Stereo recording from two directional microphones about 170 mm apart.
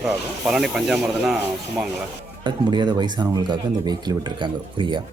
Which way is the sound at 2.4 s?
25° right (ahead or behind).